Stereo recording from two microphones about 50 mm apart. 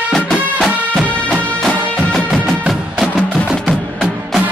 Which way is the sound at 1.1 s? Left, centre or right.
Left.